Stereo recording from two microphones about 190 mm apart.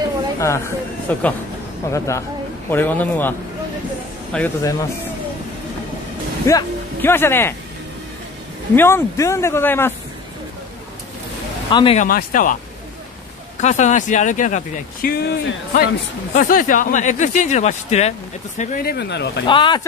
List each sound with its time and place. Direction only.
0.4 s a man's voice: 15° left (ahead or behind)
6.4 s speech: 15° left (ahead or behind)
8.7 s speech: 15° left (ahead or behind)
11.7 s speech: 25° left (ahead or behind)
12.0 s speech: 50° left (ahead or behind)
13.6 s speech: 40° left (ahead or behind)
15.0 s speech: 55° left (ahead or behind)
19.4 s speech: 25° left (ahead or behind)